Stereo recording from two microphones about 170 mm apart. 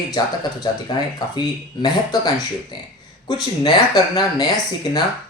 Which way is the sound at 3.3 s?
25° left (ahead or behind).